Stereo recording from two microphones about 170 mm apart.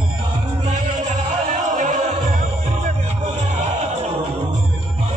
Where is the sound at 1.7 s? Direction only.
45° right (ahead or behind).